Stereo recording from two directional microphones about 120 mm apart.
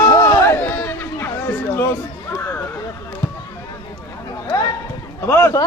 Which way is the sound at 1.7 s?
20° left (ahead or behind).